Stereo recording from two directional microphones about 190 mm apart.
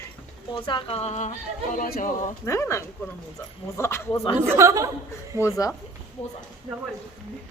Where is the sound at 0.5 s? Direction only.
25° left (ahead or behind); by 2.3 s 45° left (ahead or behind).